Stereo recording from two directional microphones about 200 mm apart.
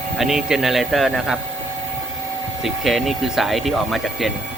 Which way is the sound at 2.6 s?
Centre (ahead or behind).